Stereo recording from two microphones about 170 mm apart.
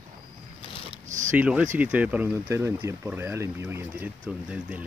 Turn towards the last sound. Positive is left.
turn(degrees=-5)  # may be behind; listen again after turning